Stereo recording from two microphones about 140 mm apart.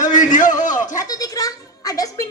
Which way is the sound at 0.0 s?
65° left (ahead or behind).